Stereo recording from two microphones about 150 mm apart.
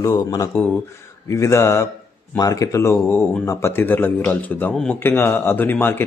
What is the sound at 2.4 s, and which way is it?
Speech, 25° left (ahead or behind).